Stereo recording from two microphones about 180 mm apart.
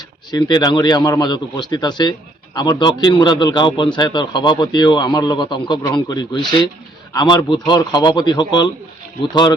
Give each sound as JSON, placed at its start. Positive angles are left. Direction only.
{"t": 0.3, "sound": "a man's voice", "side_deg": 25}